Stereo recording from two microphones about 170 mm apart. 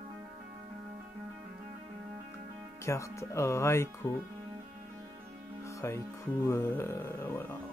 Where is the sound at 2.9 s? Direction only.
15° left (ahead or behind).